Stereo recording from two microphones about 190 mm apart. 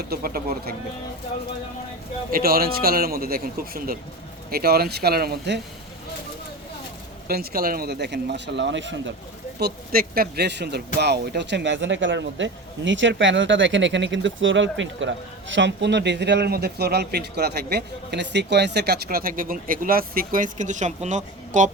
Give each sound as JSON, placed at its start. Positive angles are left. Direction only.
{"t": 0.1, "sound": "speech", "side_deg": -50}
{"t": 2.3, "sound": "speech", "side_deg": -50}
{"t": 7.3, "sound": "speech", "side_deg": -50}
{"t": 9.6, "sound": "speech", "side_deg": -55}